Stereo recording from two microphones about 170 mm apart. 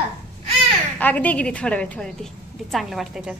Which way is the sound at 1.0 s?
10° left (ahead or behind).